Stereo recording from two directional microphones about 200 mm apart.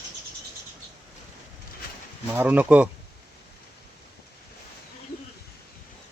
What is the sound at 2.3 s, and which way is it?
Speech, 10° right (ahead or behind).